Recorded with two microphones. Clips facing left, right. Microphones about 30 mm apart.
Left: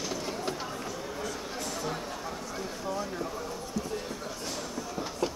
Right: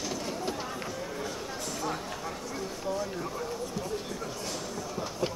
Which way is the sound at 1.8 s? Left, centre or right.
Centre.